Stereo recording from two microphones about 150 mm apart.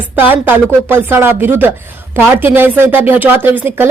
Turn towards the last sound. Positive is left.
turn(degrees=-10)  # may be behind; listen again after turning